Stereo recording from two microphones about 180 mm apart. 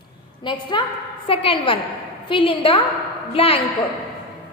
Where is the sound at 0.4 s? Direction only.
25° left (ahead or behind).